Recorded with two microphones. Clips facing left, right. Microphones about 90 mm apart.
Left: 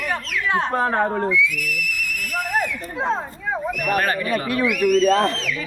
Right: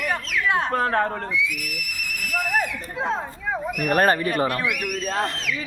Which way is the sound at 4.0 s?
35° right (ahead or behind).